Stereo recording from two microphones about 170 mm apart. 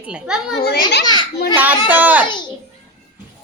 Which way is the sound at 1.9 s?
10° right (ahead or behind).